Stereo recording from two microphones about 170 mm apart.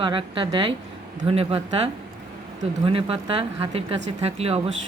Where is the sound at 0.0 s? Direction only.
30° right (ahead or behind).